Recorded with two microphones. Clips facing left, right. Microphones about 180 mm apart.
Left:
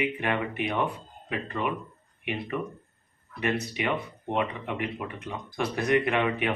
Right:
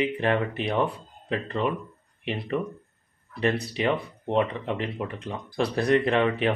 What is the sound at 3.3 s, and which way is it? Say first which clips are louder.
Speech: right 3 dB; 30° right (ahead or behind).